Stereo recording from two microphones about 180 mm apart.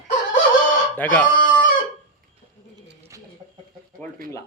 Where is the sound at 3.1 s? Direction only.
15° right (ahead or behind).